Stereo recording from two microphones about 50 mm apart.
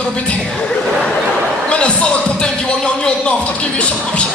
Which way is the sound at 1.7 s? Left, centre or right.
Left.